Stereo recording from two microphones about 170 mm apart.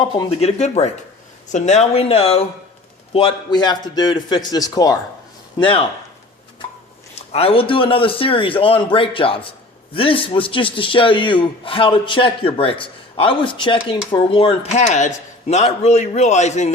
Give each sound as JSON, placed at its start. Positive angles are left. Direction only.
{"t": 0.0, "sound": "a man's voice", "side_deg": 25}
{"t": 0.4, "sound": "a man's voice", "side_deg": 40}
{"t": 7.2, "sound": "a man's voice", "side_deg": 35}